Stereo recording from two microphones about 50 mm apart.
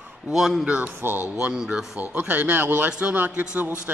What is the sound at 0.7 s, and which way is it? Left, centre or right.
Speech, right.